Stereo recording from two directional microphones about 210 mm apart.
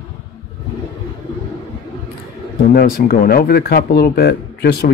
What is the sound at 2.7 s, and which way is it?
Speech, 45° left (ahead or behind).